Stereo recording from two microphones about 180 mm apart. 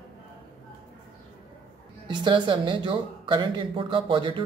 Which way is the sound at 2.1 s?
25° right (ahead or behind).